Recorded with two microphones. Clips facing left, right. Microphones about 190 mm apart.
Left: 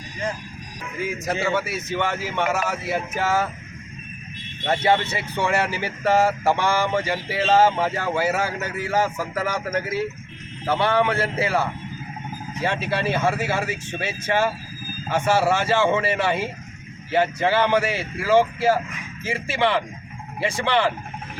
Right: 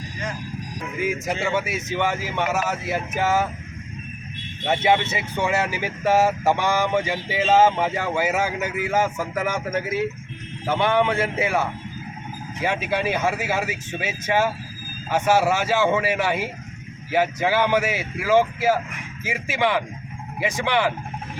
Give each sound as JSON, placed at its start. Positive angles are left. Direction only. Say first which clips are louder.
{"t": 1.2, "sound": "speech", "louder": "left 1 dB", "side_deg": -15}
{"t": 5.4, "sound": "speech", "louder": "left 1 dB", "side_deg": -5}
{"t": 12.6, "sound": "speech", "louder": "right 1 dB", "side_deg": -10}